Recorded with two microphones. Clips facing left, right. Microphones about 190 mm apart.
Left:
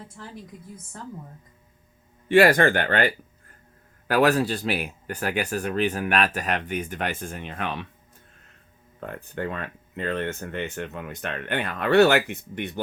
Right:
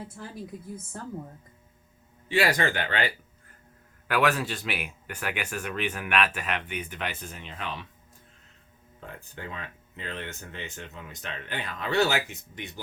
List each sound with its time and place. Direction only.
2.3 s speech: 55° left (ahead or behind)
4.1 s speech: 35° left (ahead or behind); by 7.9 s 60° left (ahead or behind)
9.0 s speech: 60° left (ahead or behind)